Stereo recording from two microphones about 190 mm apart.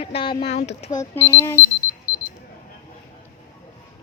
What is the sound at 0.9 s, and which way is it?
Speech, 15° left (ahead or behind).